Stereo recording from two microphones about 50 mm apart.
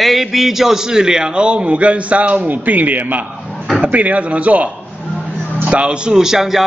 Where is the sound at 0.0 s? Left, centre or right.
Centre; by 4.6 s right.